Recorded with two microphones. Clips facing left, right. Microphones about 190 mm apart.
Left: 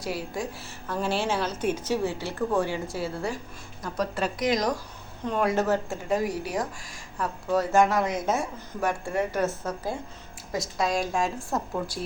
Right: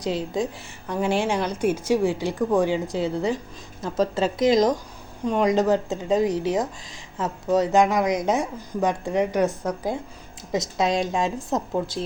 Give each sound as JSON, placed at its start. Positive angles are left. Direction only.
{"t": 0.0, "sound": "a woman's voice", "side_deg": -20}